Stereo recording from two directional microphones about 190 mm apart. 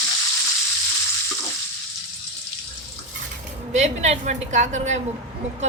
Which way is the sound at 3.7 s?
35° right (ahead or behind).